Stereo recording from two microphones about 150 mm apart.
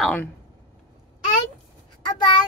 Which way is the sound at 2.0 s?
30° left (ahead or behind).